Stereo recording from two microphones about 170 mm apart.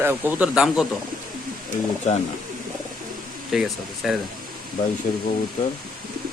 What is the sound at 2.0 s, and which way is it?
Speech, 40° left (ahead or behind).